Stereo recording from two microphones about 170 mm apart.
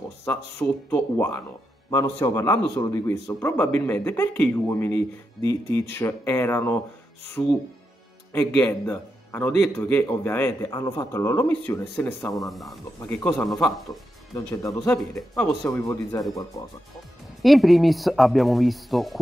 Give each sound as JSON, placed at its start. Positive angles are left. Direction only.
{"t": 0.2, "sound": "speech", "side_deg": 10}
{"t": 12.3, "sound": "speech", "side_deg": 0}
{"t": 14.3, "sound": "speech", "side_deg": 20}
{"t": 14.9, "sound": "speech", "side_deg": 0}
{"t": 15.7, "sound": "speech", "side_deg": 20}
{"t": 16.9, "sound": "speech", "side_deg": 0}